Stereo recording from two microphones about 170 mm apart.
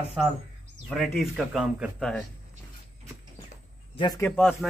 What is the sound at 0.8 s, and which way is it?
A man's voice, centre (ahead or behind).